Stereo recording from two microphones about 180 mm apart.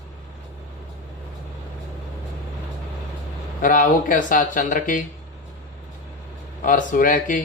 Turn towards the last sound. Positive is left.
turn(degrees=50)  # may be behind; listen again after turning